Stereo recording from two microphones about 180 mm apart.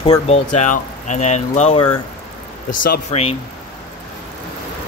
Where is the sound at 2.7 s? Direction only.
50° left (ahead or behind).